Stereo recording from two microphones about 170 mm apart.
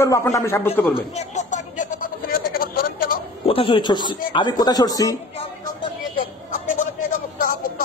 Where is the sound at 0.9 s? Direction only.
40° left (ahead or behind); by 3.2 s 60° left (ahead or behind).